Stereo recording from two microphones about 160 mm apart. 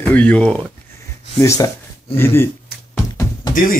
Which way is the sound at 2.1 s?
15° left (ahead or behind).